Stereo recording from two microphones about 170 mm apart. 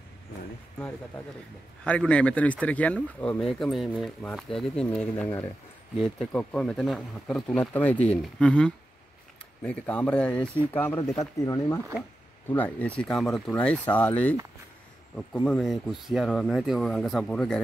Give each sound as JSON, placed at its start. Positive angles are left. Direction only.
{"t": 0.7, "sound": "speech", "side_deg": 10}
{"t": 15.4, "sound": "speech", "side_deg": 5}